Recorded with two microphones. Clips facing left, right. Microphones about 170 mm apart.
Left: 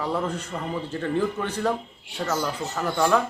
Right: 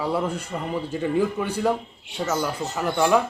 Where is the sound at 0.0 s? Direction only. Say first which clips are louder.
Right 2 dB; 10° right (ahead or behind).